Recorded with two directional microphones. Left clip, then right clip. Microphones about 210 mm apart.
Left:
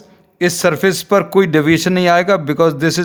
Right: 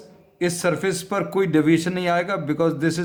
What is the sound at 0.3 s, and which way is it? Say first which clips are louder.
Speech: left 8 dB; 45° left (ahead or behind).